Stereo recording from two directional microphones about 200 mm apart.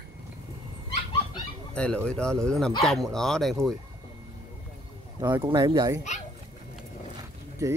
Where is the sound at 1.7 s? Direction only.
5° left (ahead or behind).